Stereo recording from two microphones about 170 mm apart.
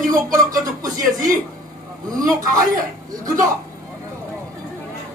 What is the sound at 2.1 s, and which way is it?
Speech, 20° right (ahead or behind).